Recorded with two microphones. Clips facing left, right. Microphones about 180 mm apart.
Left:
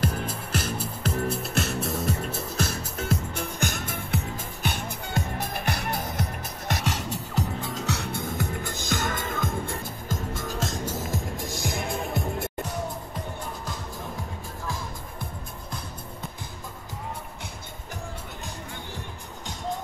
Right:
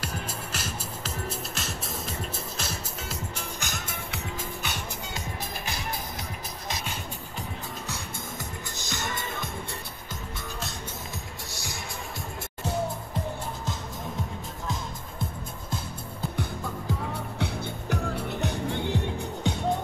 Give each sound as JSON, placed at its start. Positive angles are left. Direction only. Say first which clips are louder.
{"t": 0.0, "sound": "music", "louder": "left 6 dB", "side_deg": 55}
{"t": 6.7, "sound": "music", "louder": "left 7 dB", "side_deg": 90}
{"t": 10.9, "sound": "music", "louder": "left 8 dB", "side_deg": 90}
{"t": 11.6, "sound": "music", "louder": "left 9 dB", "side_deg": 55}
{"t": 17.1, "sound": "music", "louder": "right 6 dB", "side_deg": -70}